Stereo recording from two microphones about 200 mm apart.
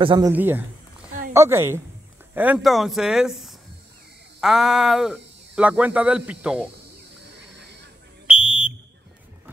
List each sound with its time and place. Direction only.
0.0 s speech: 20° right (ahead or behind)
0.3 s a woman's voice: 10° right (ahead or behind)
8.3 s fire alarm: 5° right (ahead or behind)